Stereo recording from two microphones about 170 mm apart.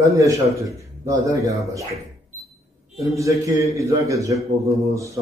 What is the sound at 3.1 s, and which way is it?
A man's voice, 20° right (ahead or behind).